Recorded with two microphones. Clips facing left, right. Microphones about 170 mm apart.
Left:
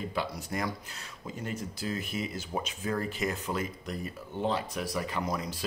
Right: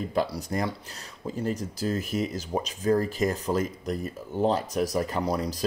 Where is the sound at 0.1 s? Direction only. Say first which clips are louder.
Right 6 dB; 40° right (ahead or behind).